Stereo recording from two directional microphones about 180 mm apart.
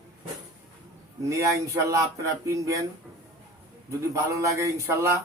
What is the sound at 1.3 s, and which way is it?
Speech, 15° right (ahead or behind).